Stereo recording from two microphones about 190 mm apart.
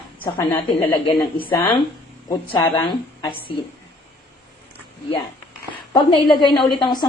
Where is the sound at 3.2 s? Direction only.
25° left (ahead or behind).